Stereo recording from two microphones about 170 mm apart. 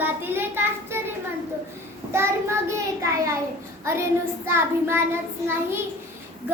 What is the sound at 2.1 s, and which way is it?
Speech, 15° right (ahead or behind).